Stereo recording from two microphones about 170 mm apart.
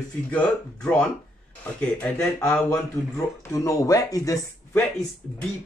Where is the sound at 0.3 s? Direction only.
10° left (ahead or behind).